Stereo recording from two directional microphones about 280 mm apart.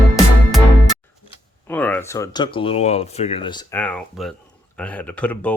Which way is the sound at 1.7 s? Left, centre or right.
Centre.